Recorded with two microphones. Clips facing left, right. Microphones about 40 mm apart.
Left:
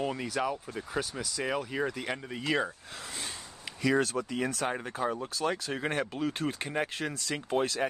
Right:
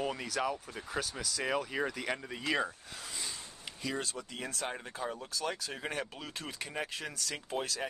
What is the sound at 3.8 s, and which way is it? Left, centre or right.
Speech, left.